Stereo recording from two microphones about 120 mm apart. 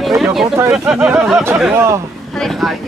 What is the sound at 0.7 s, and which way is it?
Speech, 5° right (ahead or behind).